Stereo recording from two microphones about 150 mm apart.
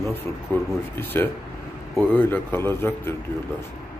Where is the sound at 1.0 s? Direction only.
15° left (ahead or behind).